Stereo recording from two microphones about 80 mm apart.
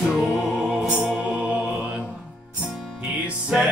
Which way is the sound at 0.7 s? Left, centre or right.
Centre.